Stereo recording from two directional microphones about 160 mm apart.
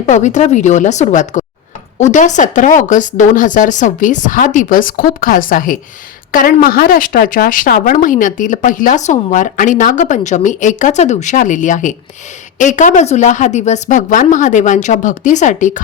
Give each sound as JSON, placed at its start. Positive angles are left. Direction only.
{"t": 0.0, "sound": "a woman's voice", "side_deg": 50}